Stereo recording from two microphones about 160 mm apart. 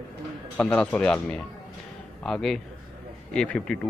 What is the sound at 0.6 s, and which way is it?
Speech, 10° left (ahead or behind).